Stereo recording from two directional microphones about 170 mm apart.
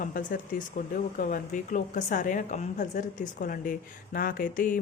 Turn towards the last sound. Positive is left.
turn(degrees=50)  # may be behind; listen again after turning